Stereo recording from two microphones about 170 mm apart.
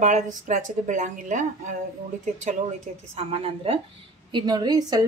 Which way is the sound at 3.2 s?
35° right (ahead or behind).